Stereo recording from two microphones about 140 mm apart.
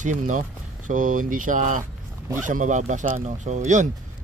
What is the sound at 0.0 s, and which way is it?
Speech, 65° right (ahead or behind).